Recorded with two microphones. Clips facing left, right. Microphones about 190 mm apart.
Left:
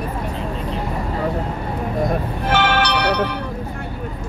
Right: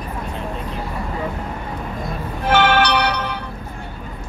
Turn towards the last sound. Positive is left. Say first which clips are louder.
# right 2 dB
turn(degrees=-55)  # may be behind; listen again after turning